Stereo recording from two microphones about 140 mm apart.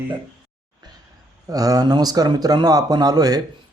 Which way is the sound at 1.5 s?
25° right (ahead or behind).